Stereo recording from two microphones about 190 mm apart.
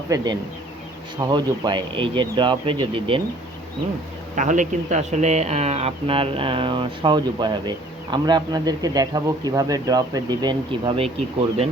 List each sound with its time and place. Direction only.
0.1 s speech: 20° right (ahead or behind)
4.4 s speech: 40° right (ahead or behind)